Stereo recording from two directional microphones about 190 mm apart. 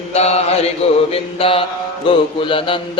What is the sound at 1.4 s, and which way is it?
Mantra, 30° left (ahead or behind).